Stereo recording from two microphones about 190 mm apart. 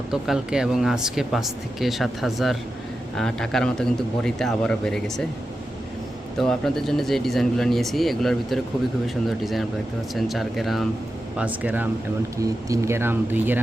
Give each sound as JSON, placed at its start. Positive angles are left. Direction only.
{"t": 0.1, "sound": "speech", "side_deg": -5}
{"t": 6.3, "sound": "speech", "side_deg": 0}